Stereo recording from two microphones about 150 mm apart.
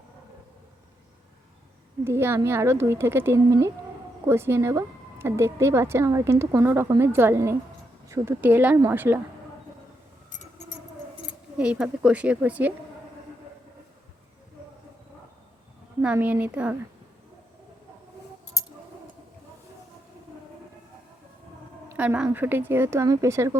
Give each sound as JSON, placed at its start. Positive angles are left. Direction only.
{"t": 2.0, "sound": "a woman's voice", "side_deg": -15}
{"t": 11.5, "sound": "a woman's voice", "side_deg": -5}
{"t": 16.0, "sound": "a woman's voice", "side_deg": -10}
{"t": 21.9, "sound": "a woman's voice", "side_deg": -10}